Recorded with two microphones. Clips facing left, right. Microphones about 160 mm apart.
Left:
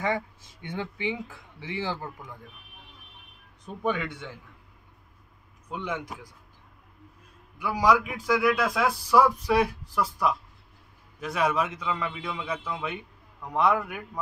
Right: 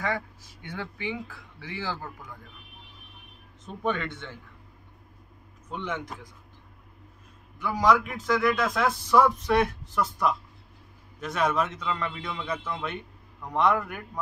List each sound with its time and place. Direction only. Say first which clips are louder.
0.0 s speech: left 2 dB; 20° left (ahead or behind)
3.6 s a man's voice: even; 10° left (ahead or behind)
5.7 s a man's voice: even; 10° left (ahead or behind)
7.5 s a man's voice: even; 10° left (ahead or behind)